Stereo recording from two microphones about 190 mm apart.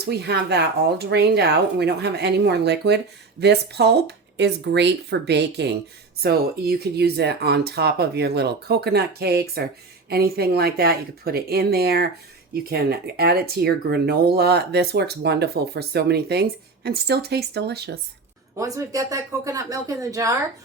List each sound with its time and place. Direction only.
0.0 s speech: 60° right (ahead or behind)
18.5 s speech: 15° right (ahead or behind)